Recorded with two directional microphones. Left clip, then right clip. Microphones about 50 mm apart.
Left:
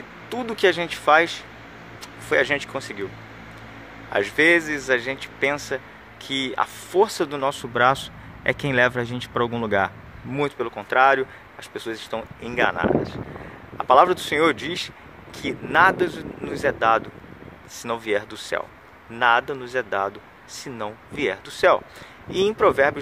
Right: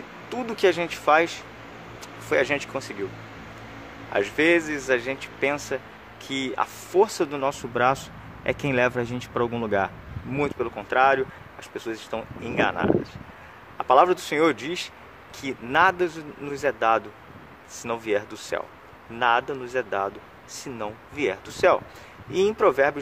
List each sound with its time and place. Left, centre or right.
0.3 s speech: left
0.6 s speech: centre
1.0 s speech: centre
2.2 s speech: centre
4.1 s speech: left; by 7.0 s centre
7.0 s speech: left
9.3 s speech: left
10.3 s speech: left
13.7 s a sound: left
14.0 s speech: centre; by 20.2 s left
20.5 s speech: centre
22.6 s speech: centre